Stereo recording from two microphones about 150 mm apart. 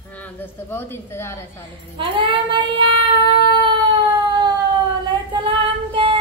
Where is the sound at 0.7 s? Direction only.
15° left (ahead or behind).